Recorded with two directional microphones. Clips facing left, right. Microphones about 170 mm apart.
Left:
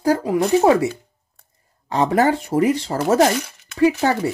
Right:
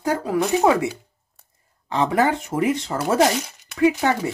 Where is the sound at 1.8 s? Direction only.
40° left (ahead or behind).